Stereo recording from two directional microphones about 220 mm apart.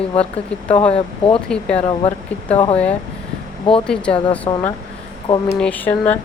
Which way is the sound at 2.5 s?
25° left (ahead or behind).